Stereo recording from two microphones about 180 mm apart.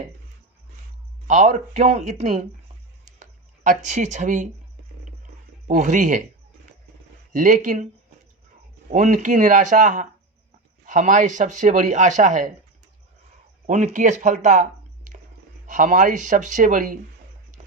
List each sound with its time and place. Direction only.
1.3 s speech: 40° right (ahead or behind)
3.2 s a sound: 45° right (ahead or behind)
5.6 s speech: 45° right (ahead or behind)
7.3 s speech: 45° right (ahead or behind)
8.9 s speech: 40° right (ahead or behind)
13.7 s speech: 45° right (ahead or behind)